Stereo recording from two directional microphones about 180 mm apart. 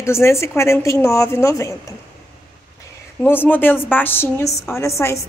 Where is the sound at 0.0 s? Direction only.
15° left (ahead or behind).